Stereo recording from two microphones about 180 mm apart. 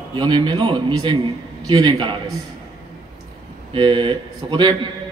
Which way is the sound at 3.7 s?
25° right (ahead or behind).